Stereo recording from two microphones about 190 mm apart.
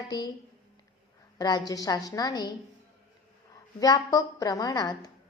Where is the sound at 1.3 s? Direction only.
20° left (ahead or behind).